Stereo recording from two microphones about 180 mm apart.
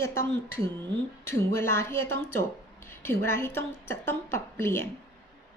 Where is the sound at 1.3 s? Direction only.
15° left (ahead or behind).